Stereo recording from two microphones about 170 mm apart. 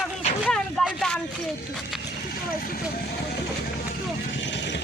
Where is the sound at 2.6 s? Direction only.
65° left (ahead or behind).